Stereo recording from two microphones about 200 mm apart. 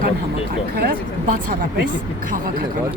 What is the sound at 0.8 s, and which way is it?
Speech, 45° right (ahead or behind).